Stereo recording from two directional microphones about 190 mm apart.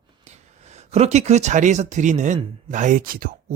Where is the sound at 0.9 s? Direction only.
35° right (ahead or behind).